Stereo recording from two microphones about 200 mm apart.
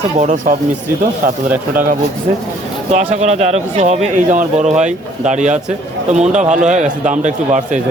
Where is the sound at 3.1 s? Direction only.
35° right (ahead or behind).